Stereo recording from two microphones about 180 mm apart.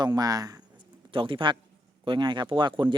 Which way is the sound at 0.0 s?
20° right (ahead or behind).